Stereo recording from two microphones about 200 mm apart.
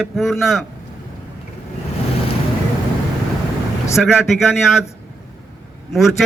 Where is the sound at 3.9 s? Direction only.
Centre (ahead or behind).